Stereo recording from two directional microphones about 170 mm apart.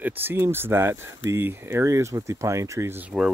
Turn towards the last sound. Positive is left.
turn(degrees=-10)  # may be behind; listen again after turning